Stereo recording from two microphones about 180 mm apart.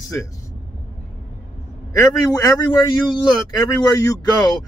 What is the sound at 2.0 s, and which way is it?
Speech, 20° left (ahead or behind).